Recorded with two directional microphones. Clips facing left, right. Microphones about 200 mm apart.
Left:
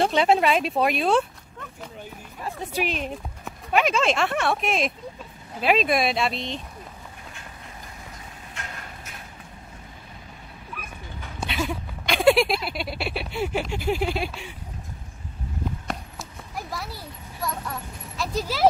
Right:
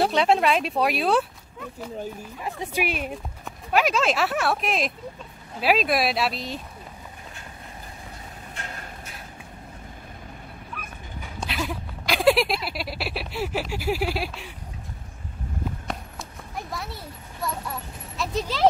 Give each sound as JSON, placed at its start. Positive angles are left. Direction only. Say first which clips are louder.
{"t": 0.0, "sound": "speech", "louder": "left 1 dB", "side_deg": 0}
{"t": 11.3, "sound": "a sound", "louder": "left 2 dB", "side_deg": 0}
{"t": 15.9, "sound": "clip-clop", "louder": "left 1 dB", "side_deg": 0}